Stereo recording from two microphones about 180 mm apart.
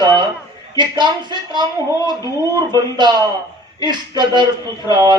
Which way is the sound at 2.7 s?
25° right (ahead or behind).